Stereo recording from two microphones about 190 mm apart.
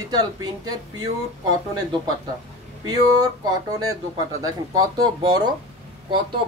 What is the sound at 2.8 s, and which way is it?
Speech, 20° right (ahead or behind).